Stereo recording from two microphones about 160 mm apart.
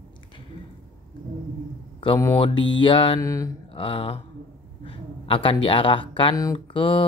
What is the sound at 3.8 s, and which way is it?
Speech, 35° left (ahead or behind).